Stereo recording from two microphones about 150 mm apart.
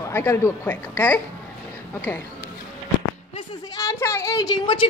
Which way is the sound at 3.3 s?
20° left (ahead or behind).